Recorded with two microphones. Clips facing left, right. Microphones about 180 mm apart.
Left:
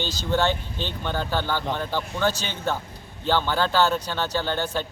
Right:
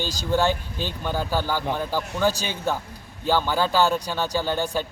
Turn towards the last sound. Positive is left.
turn(degrees=-10)  # may be behind; listen again after turning